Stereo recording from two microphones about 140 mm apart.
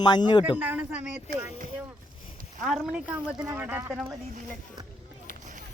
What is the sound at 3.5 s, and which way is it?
Speech, 15° right (ahead or behind).